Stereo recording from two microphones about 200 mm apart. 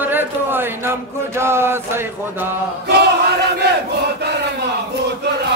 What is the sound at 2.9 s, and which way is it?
Battle cry, 55° right (ahead or behind).